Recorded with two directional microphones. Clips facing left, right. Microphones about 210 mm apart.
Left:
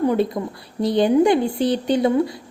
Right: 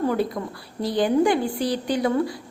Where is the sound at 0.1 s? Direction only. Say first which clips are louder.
Left 4 dB; 20° left (ahead or behind).